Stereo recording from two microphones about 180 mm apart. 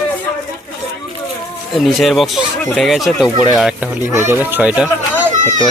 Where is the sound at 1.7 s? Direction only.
Centre (ahead or behind).